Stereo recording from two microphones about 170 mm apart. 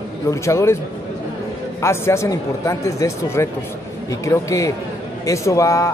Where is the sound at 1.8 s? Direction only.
15° left (ahead or behind).